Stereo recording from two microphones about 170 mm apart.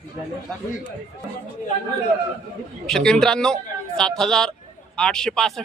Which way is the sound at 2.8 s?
5° left (ahead or behind).